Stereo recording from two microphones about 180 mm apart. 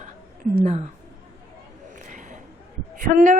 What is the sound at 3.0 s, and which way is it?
Speech, 45° right (ahead or behind).